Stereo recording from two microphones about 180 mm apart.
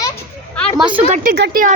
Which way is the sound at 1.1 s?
50° right (ahead or behind).